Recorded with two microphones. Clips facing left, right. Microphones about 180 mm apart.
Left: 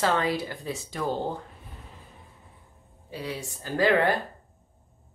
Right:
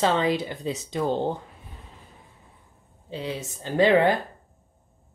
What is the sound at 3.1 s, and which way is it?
Speech, 20° right (ahead or behind).